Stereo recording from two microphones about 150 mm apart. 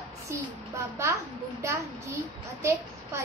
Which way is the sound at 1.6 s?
20° right (ahead or behind).